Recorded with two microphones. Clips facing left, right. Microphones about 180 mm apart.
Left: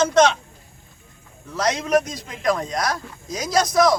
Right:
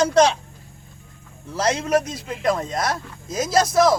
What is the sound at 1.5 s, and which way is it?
A man's voice, 30° right (ahead or behind).